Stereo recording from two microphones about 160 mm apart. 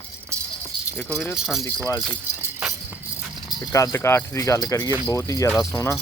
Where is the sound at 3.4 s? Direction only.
20° left (ahead or behind).